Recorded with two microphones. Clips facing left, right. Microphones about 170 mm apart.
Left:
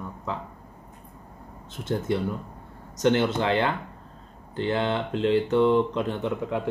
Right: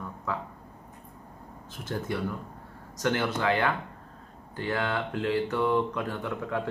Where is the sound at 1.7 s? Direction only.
25° left (ahead or behind).